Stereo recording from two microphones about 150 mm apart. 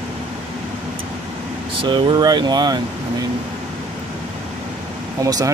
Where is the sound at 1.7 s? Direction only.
35° right (ahead or behind).